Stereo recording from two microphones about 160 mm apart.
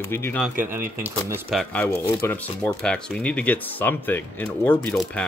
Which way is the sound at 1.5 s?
5° left (ahead or behind).